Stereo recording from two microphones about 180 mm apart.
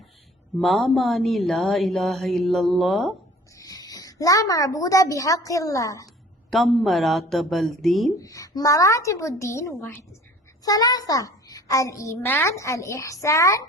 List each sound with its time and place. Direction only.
0.6 s a woman's voice: centre (ahead or behind)
3.5 s a woman's voice: 20° left (ahead or behind)
6.5 s a woman's voice: centre (ahead or behind)
8.2 s a child's voice: 20° left (ahead or behind)